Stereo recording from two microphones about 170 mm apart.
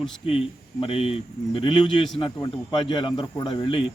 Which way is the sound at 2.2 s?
30° left (ahead or behind).